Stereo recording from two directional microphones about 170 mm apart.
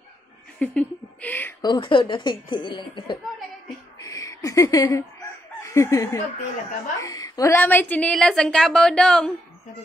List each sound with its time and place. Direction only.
0.6 s speech: 10° left (ahead or behind)
1.6 s a woman's voice: 25° left (ahead or behind)
4.0 s a sound: 20° left (ahead or behind)
5.6 s a woman's voice: 20° left (ahead or behind)